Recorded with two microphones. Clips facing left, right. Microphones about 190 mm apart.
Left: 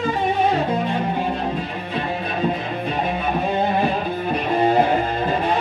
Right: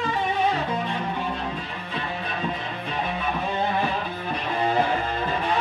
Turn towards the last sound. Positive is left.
turn(degrees=40)  # may be behind; listen again after turning